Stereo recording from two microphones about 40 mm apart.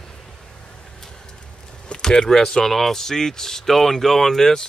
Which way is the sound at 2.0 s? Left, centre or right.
Centre.